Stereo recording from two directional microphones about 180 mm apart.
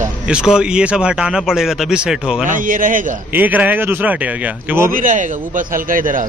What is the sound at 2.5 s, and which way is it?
Speech, 50° right (ahead or behind).